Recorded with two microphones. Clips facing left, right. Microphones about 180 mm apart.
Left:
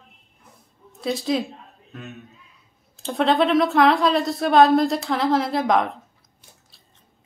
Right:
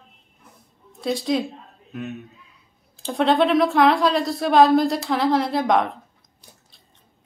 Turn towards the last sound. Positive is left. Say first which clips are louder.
# even
turn(degrees=0)  # may be behind; listen again after turning